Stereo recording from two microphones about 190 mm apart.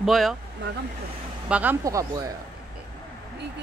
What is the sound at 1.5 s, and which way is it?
Speech, 10° right (ahead or behind).